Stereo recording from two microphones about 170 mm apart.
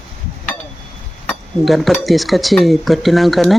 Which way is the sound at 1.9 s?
Centre (ahead or behind).